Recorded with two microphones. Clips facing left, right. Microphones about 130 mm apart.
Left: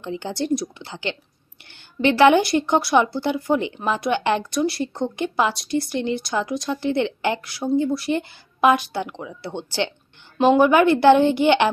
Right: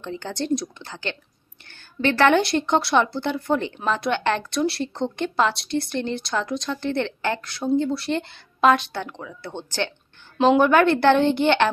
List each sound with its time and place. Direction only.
0.0 s speech: 10° left (ahead or behind)
2.4 s speech: 5° left (ahead or behind)
5.9 s speech: 55° right (ahead or behind)
6.3 s speech: 5° left (ahead or behind)
7.4 s speech: centre (ahead or behind)
10.3 s speech: 5° left (ahead or behind)